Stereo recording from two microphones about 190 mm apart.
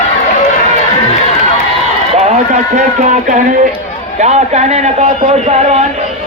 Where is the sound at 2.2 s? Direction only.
40° right (ahead or behind).